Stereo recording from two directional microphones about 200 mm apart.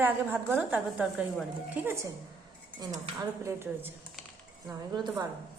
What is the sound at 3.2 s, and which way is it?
A woman's voice, 15° right (ahead or behind).